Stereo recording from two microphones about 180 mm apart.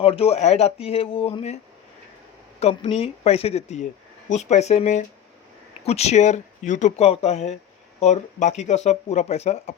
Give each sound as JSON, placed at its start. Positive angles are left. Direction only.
{"t": 0.0, "sound": "speech", "side_deg": 35}
{"t": 2.6, "sound": "speech", "side_deg": 35}